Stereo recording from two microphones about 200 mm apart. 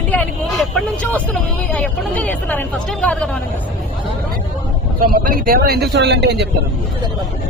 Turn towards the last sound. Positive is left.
turn(degrees=-55)  # may be behind; listen again after turning